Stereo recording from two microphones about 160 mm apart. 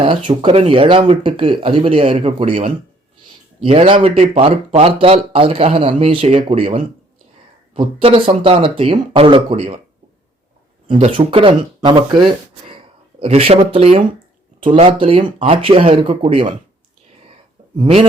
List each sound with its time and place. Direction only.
0.0 s speech: 35° right (ahead or behind)
10.8 s speech: 35° right (ahead or behind)
17.7 s speech: 35° right (ahead or behind)